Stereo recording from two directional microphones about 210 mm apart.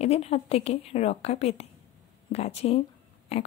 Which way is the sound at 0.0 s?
30° left (ahead or behind).